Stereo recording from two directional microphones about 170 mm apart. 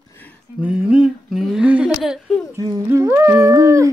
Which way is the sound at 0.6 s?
5° right (ahead or behind).